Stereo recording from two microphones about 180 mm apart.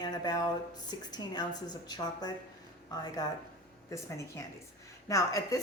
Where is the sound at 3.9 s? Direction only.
15° left (ahead or behind).